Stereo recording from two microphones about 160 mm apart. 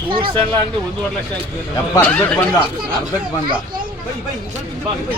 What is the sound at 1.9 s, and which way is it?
Speech, 10° left (ahead or behind).